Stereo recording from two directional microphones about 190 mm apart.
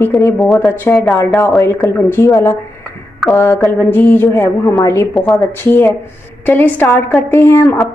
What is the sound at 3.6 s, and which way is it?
A woman's voice, 10° left (ahead or behind).